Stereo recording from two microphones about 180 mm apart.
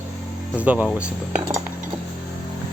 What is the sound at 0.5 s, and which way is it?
Speech, 10° right (ahead or behind).